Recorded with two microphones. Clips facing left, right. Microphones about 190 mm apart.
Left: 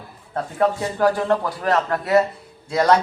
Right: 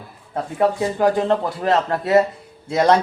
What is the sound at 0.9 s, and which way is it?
Speech, 20° right (ahead or behind).